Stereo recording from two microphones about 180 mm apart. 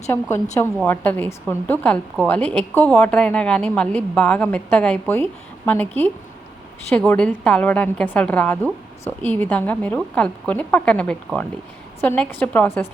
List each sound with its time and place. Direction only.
0.1 s a woman's voice: 15° left (ahead or behind)
6.9 s a woman's voice: 5° left (ahead or behind)